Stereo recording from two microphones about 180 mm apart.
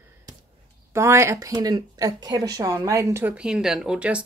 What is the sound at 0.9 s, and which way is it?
A woman's voice, 15° right (ahead or behind).